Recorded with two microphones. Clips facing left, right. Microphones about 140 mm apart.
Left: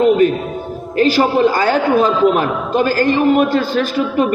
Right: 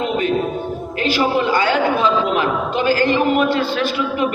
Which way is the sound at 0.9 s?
40° left (ahead or behind).